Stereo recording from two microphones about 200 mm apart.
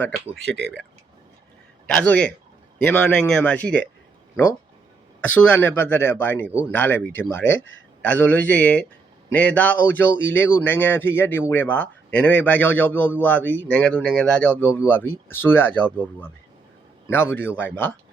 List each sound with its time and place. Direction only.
0.4 s speech: 60° right (ahead or behind)
2.0 s speech: 5° left (ahead or behind)
5.3 s speech: 10° left (ahead or behind)